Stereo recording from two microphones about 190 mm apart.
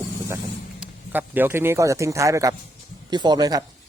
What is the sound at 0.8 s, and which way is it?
Speech, 10° right (ahead or behind).